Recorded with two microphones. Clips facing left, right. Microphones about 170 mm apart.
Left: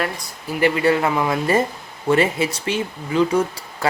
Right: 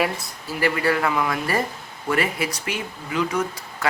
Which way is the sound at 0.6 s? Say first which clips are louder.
Left 4 dB; 25° left (ahead or behind).